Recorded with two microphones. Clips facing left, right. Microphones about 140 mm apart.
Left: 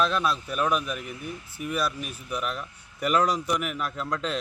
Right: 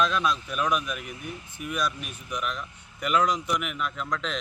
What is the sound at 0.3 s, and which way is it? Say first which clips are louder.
Speech: left 1 dB; 35° left (ahead or behind).